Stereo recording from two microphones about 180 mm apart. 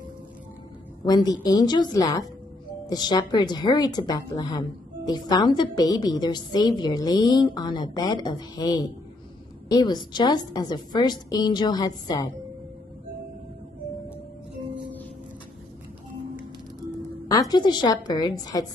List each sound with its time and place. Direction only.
1.0 s a woman's voice: 20° left (ahead or behind)
17.3 s a woman's voice: 20° left (ahead or behind)